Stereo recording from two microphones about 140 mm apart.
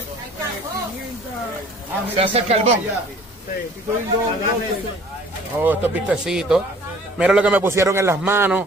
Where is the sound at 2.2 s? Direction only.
50° right (ahead or behind).